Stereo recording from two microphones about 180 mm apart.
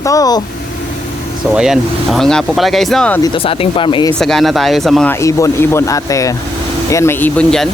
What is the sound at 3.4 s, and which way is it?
Speech, 30° left (ahead or behind).